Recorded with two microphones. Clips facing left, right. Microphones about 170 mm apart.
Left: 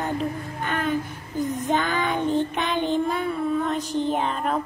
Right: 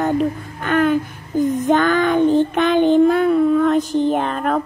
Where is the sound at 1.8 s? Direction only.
85° right.